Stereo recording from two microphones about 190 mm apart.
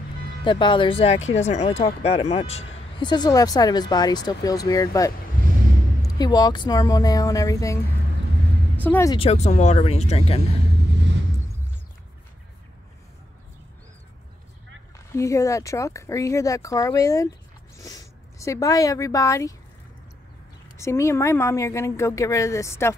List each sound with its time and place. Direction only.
0.4 s speech: 25° left (ahead or behind); by 9.1 s 10° left (ahead or behind)
9.1 s speech: 30° left (ahead or behind)
15.1 s a woman's voice: 15° left (ahead or behind)
20.7 s a woman's voice: 15° left (ahead or behind)